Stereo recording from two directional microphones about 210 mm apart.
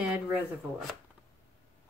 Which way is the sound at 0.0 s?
5° right (ahead or behind).